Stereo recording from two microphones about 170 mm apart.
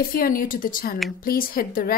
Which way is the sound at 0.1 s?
55° left (ahead or behind).